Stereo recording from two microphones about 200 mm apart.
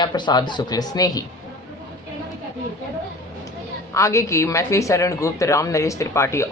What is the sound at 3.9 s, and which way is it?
A man's voice, 15° left (ahead or behind).